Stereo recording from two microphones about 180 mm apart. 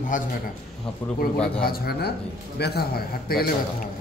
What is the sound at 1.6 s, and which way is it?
A man's voice, 60° left (ahead or behind).